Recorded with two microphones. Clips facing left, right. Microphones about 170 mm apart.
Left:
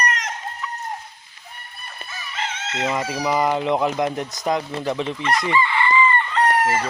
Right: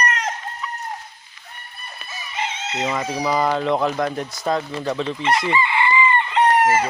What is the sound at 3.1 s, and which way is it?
Speech, 10° left (ahead or behind).